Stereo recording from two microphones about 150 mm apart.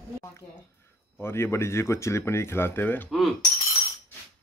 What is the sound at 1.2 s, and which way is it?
Speech, 15° left (ahead or behind).